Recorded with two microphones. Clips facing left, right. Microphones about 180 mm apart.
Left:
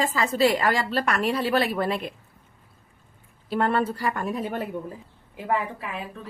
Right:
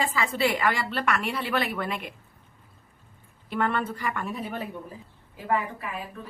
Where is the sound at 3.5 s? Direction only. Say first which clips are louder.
Left 4 dB; 35° left (ahead or behind).